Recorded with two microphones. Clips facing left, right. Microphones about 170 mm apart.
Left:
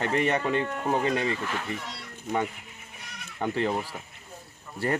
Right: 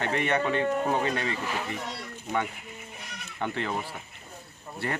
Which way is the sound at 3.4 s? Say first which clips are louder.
Left 4 dB; 35° left (ahead or behind).